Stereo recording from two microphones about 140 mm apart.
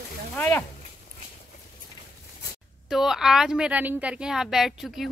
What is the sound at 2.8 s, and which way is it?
A woman's voice, 5° right (ahead or behind).